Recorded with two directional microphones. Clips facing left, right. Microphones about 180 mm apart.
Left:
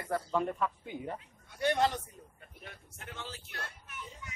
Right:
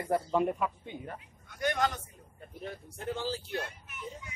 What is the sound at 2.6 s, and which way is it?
Speech, 35° right (ahead or behind).